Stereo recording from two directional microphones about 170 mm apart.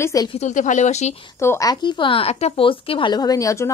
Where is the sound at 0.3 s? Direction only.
45° left (ahead or behind).